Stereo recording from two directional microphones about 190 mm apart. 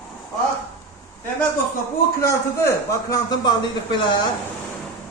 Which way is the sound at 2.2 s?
15° left (ahead or behind).